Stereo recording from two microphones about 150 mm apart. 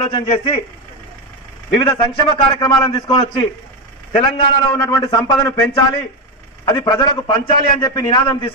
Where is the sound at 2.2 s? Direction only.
35° left (ahead or behind).